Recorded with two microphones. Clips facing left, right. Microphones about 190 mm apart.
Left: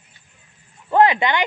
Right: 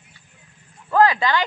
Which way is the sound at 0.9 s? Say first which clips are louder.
Left 1 dB; 25° left (ahead or behind).